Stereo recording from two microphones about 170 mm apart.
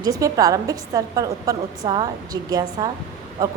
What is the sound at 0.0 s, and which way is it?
A woman's voice, 20° right (ahead or behind).